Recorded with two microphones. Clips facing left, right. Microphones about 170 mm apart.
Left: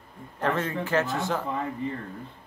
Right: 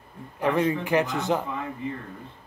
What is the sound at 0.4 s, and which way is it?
Speech, 15° right (ahead or behind).